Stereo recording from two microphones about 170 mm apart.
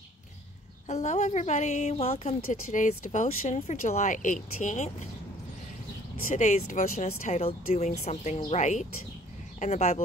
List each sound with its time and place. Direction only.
0.8 s a woman's voice: 45° left (ahead or behind)
6.2 s a woman's voice: 45° left (ahead or behind)